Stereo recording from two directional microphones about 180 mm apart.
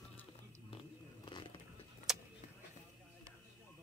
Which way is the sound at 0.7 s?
25° left (ahead or behind).